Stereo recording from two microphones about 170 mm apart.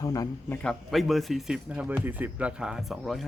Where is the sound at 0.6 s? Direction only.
Centre (ahead or behind).